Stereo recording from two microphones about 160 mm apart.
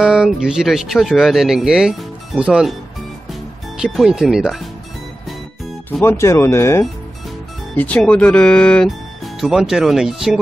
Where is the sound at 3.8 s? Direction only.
5° right (ahead or behind).